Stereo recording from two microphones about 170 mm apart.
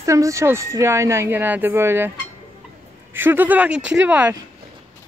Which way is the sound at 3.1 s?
15° right (ahead or behind).